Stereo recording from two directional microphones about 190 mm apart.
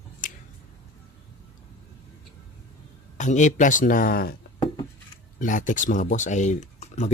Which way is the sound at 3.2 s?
40° left (ahead or behind).